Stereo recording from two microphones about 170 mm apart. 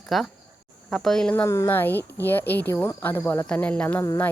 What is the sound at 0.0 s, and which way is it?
Speech, centre (ahead or behind).